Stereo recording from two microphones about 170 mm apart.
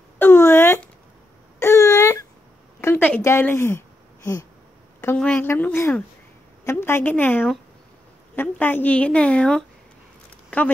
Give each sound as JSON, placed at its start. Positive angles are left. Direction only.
{"t": 0.2, "sound": "a sound", "side_deg": 15}
{"t": 2.8, "sound": "speech", "side_deg": 10}
{"t": 5.0, "sound": "a woman's voice", "side_deg": 10}